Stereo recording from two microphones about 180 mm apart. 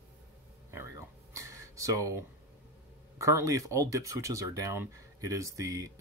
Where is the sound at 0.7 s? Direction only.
15° right (ahead or behind).